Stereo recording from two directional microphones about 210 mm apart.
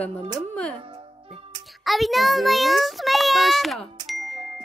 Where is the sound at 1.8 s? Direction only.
Centre (ahead or behind).